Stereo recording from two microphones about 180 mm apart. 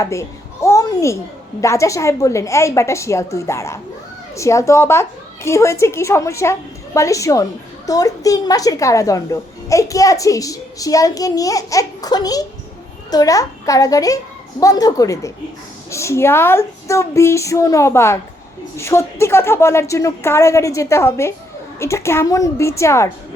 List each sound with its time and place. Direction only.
0.0 s babbling: 15° left (ahead or behind)
1.6 s a woman's voice: 15° left (ahead or behind)